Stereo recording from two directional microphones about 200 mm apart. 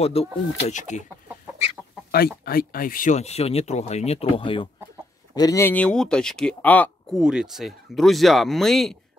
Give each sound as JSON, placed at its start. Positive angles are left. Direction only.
{"t": 0.0, "sound": "speech", "side_deg": 30}
{"t": 2.0, "sound": "speech", "side_deg": 50}
{"t": 7.2, "sound": "speech", "side_deg": -5}